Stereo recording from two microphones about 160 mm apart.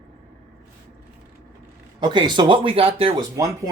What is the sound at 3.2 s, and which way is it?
Speech, 20° right (ahead or behind).